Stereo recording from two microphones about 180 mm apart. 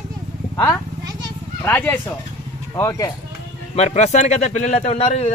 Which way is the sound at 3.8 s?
40° left (ahead or behind).